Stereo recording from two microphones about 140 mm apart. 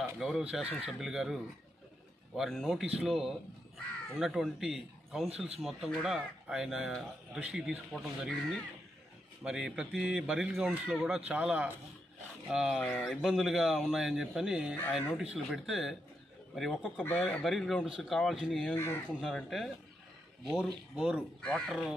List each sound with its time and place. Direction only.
0.2 s speech: 5° right (ahead or behind)
17.0 s speech: 10° left (ahead or behind)
18.8 s speech: 15° left (ahead or behind)
19.2 s speech: centre (ahead or behind)
21.4 s speech: 5° left (ahead or behind)